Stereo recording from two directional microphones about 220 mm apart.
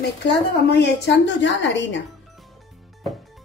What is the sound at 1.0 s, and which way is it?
Speech, 55° left (ahead or behind).